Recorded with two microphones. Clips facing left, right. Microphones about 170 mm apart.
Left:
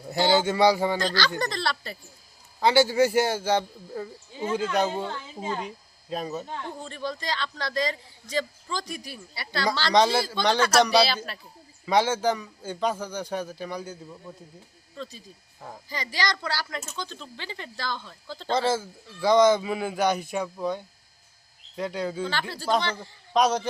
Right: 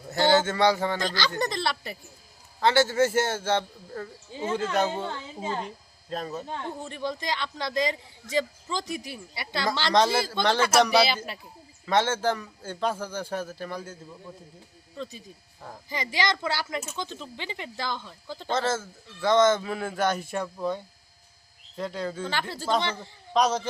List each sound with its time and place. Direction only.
0.1 s speech: 15° left (ahead or behind)
0.9 s speech: 20° right (ahead or behind)
2.6 s speech: 5° left (ahead or behind)
6.6 s speech: 20° right (ahead or behind)
9.9 s speech: centre (ahead or behind)
11.3 s speech: 20° right (ahead or behind)
11.9 s speech: 5° left (ahead or behind)
14.9 s speech: 20° right (ahead or behind)
18.5 s speech: centre (ahead or behind)
22.3 s speech: 20° right (ahead or behind)
23.3 s speech: 5° left (ahead or behind)